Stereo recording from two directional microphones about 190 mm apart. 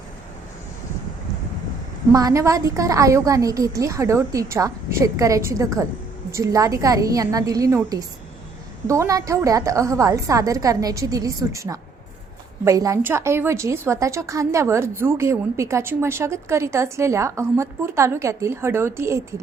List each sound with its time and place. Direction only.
2.1 s a woman's voice: 15° right (ahead or behind)